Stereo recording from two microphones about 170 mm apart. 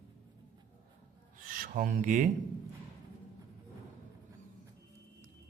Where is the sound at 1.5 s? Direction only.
55° right (ahead or behind).